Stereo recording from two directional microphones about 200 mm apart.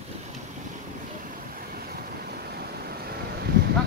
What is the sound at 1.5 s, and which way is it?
Vehicle, 45° right (ahead or behind).